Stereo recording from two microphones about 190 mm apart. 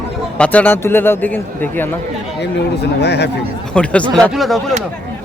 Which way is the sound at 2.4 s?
60° left (ahead or behind).